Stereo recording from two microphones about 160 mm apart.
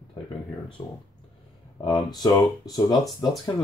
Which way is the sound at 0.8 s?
20° left (ahead or behind).